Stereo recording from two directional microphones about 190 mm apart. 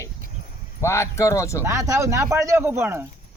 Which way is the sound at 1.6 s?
15° right (ahead or behind).